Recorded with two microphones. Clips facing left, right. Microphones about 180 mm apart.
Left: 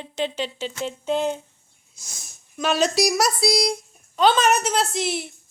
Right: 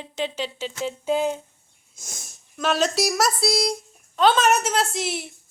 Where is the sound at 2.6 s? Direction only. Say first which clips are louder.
Left 2 dB; centre (ahead or behind).